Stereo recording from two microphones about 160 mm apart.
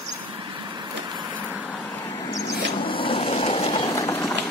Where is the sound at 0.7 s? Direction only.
25° right (ahead or behind).